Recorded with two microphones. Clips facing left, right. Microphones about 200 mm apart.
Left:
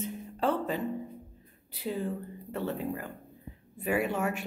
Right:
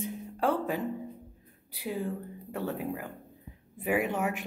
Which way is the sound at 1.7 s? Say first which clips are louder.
Left 1 dB; 10° right (ahead or behind).